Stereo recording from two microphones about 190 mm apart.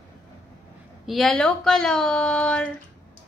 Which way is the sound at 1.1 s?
Centre (ahead or behind).